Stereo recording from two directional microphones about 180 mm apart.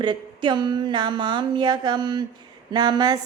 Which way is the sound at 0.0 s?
25° right (ahead or behind).